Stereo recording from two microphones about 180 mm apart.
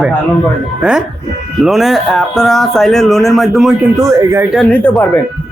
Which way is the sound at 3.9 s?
15° right (ahead or behind).